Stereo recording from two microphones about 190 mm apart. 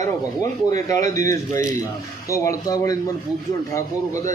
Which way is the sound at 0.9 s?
15° left (ahead or behind).